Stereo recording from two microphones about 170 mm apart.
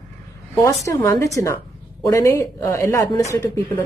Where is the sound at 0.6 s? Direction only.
20° left (ahead or behind).